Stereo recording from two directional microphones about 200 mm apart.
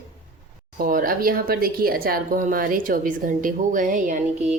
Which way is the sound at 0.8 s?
45° right (ahead or behind).